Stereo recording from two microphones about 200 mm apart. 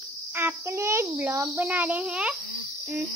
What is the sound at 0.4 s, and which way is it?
Speech, 10° right (ahead or behind).